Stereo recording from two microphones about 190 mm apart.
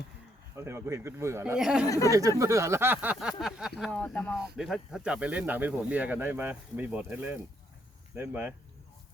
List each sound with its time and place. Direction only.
0.5 s speech: 15° right (ahead or behind)
1.5 s speech: 5° right (ahead or behind)
1.9 s speech: 15° left (ahead or behind)
2.4 s speech: 15° right (ahead or behind)